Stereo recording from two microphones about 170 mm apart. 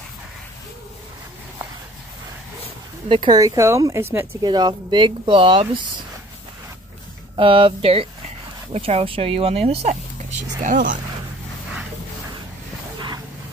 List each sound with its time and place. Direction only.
3.1 s speech: 30° right (ahead or behind)
4.5 s speech: 25° right (ahead or behind)
7.3 s speech: 30° right (ahead or behind)
10.6 s speech: 50° right (ahead or behind)